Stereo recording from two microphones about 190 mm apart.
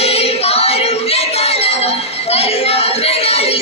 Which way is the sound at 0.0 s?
30° left (ahead or behind).